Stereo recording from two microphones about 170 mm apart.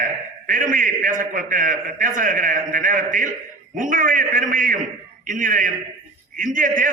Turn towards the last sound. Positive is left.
turn(degrees=-50)  # may be behind; listen again after turning